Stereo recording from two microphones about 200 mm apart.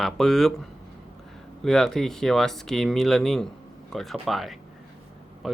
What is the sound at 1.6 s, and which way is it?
Speech, centre (ahead or behind).